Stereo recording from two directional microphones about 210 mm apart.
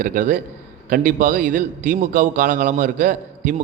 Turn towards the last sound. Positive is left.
turn(degrees=-40)  # may be behind; listen again after turning